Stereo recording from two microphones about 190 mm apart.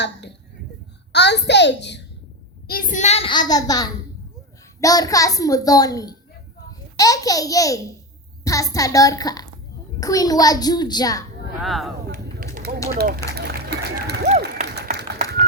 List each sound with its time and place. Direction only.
0.0 s a child's voice: 65° left (ahead or behind)
2.6 s a sound: 45° left (ahead or behind); by 3.9 s 20° left (ahead or behind)
4.8 s a child's voice: 20° left (ahead or behind)
11.6 s speech: centre (ahead or behind)
12.0 s a sound: 50° right (ahead or behind)
13.0 s speech: 55° right (ahead or behind)
14.3 s applause: 50° right (ahead or behind)